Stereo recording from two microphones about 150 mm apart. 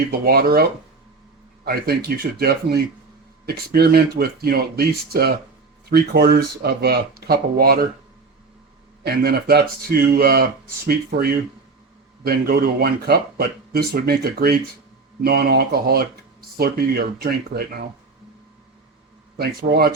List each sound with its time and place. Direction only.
0.1 s speech: 90° right
9.0 s speech: 90° right
19.4 s speech: 90° right